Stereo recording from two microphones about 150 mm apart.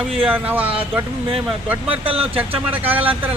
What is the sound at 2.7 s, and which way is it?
Speech, 10° right (ahead or behind).